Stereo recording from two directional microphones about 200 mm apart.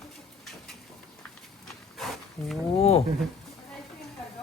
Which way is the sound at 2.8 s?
30° left (ahead or behind).